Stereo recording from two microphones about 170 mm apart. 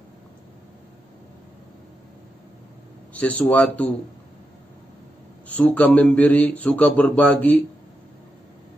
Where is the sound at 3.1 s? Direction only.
10° left (ahead or behind).